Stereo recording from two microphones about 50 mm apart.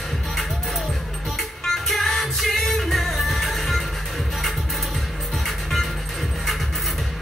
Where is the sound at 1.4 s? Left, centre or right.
Centre.